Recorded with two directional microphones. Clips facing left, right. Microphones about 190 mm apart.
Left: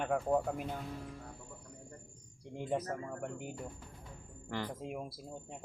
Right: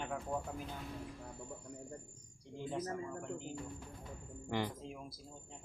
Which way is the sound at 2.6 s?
60° left (ahead or behind).